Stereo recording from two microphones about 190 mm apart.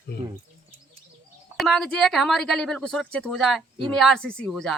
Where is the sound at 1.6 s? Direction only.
Centre (ahead or behind).